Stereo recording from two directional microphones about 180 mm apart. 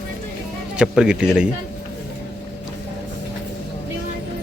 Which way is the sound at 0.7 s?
5° right (ahead or behind).